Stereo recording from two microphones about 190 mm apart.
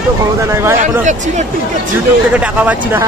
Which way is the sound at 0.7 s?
40° right (ahead or behind).